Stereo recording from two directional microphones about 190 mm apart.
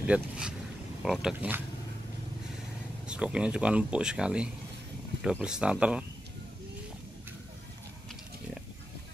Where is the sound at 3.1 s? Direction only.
5° right (ahead or behind).